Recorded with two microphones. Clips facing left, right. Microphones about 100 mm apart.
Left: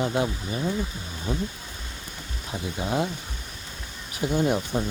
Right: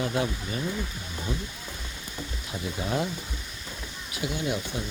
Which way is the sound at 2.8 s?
25° left (ahead or behind).